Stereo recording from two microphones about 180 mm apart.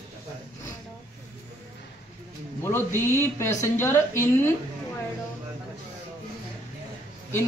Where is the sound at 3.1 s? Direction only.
15° left (ahead or behind).